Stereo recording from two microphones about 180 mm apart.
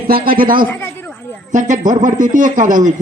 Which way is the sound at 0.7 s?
10° left (ahead or behind).